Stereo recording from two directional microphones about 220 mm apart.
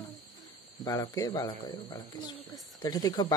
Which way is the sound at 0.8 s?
15° left (ahead or behind).